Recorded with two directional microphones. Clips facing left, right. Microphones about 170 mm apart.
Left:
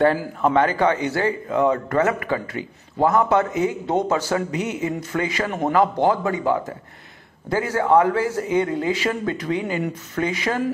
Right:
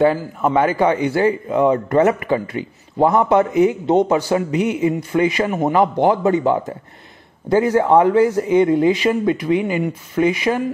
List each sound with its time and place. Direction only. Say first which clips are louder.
0.4 s a man's voice: right 2 dB; 10° right (ahead or behind)